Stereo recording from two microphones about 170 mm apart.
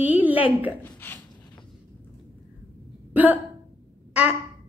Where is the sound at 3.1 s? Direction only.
10° right (ahead or behind).